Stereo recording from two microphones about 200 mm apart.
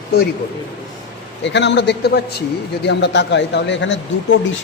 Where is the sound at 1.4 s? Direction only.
60° left (ahead or behind).